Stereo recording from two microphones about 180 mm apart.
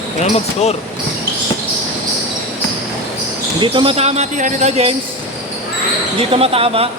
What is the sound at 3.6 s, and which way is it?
Speech, 30° right (ahead or behind).